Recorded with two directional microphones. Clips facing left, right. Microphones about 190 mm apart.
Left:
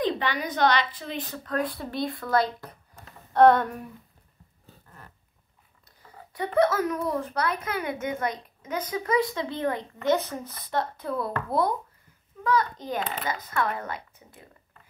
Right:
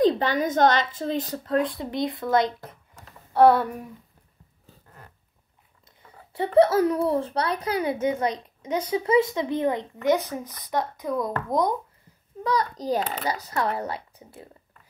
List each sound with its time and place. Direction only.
0.0 s a woman's voice: 45° right (ahead or behind); by 2.7 s 25° right (ahead or behind)
3.3 s speech: 10° right (ahead or behind)
6.3 s a woman's voice: 30° right (ahead or behind)
12.4 s a woman's voice: 35° right (ahead or behind)